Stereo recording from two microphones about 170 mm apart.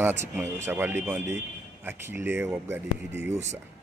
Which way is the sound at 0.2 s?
15° right (ahead or behind).